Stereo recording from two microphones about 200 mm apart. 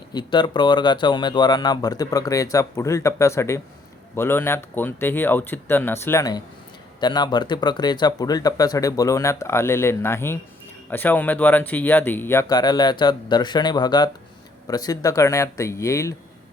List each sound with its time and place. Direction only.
0.1 s speech: 20° left (ahead or behind)